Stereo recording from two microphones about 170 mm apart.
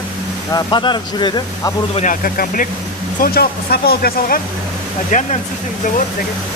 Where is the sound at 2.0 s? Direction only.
55° left (ahead or behind).